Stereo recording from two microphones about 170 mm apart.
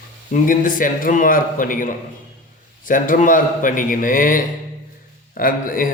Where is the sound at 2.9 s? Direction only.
55° left (ahead or behind).